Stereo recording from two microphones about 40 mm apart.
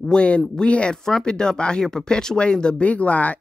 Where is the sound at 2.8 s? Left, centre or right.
Left.